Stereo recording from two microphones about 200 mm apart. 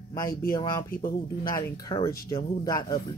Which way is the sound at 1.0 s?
20° left (ahead or behind).